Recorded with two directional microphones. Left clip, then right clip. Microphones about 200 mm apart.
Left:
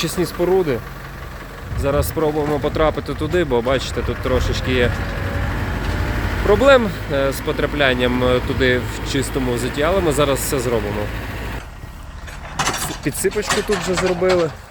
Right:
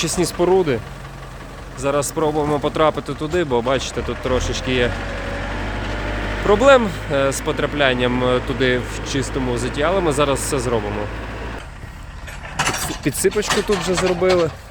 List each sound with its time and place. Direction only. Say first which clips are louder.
0.2 s speech: right 1 dB; 15° right (ahead or behind)
1.8 s speech: even; 5° left (ahead or behind)
4.9 s vehicle: even; 55° left (ahead or behind)
6.5 s speech: even; centre (ahead or behind)
9.3 s speech: left 1 dB; 50° left (ahead or behind)
9.6 s speech: even; 5° left (ahead or behind)
12.7 s vehicle: even; 20° right (ahead or behind)
13.1 s speech: right 2 dB; 25° right (ahead or behind)
13.9 s speech: even; 15° left (ahead or behind)
14.3 s speech: even; centre (ahead or behind)